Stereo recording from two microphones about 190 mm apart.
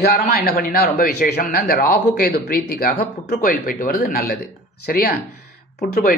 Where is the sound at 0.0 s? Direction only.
60° left (ahead or behind).